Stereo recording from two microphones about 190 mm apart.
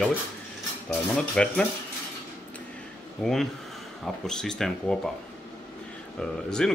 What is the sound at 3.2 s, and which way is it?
Speech, centre (ahead or behind).